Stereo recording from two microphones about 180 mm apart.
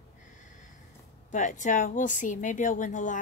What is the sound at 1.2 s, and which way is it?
Speech, 45° left (ahead or behind).